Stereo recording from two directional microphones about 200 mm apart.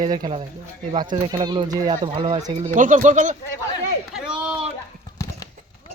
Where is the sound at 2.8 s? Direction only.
40° right (ahead or behind).